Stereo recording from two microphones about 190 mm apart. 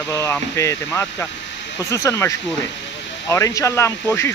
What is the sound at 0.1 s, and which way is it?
Speech, 15° left (ahead or behind).